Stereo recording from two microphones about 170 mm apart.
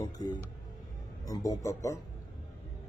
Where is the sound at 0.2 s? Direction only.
25° left (ahead or behind).